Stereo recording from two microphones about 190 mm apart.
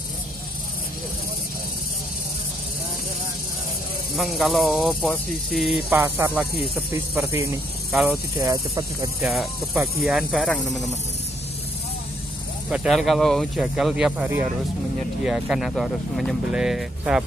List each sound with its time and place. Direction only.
4.2 s speech: centre (ahead or behind)
5.9 s snake: 10° right (ahead or behind)
7.9 s speech: centre (ahead or behind)
8.4 s speech: 20° right (ahead or behind)
9.3 s speech: centre (ahead or behind)
12.6 s speech: 5° right (ahead or behind)